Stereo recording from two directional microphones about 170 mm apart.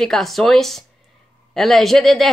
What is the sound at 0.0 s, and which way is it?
A woman's voice, centre (ahead or behind).